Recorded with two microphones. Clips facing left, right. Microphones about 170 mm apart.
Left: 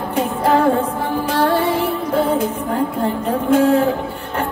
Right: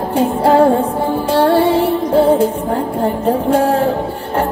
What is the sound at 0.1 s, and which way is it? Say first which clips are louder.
Music: right 4 dB; 30° right (ahead or behind).